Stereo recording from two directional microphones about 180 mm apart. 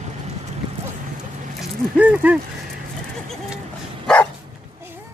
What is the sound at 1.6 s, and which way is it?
Speech, 5° right (ahead or behind).